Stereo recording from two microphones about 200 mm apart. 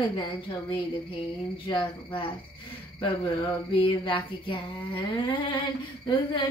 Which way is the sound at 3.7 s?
25° left (ahead or behind).